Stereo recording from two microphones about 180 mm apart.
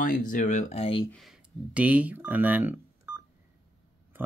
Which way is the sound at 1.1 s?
Centre (ahead or behind).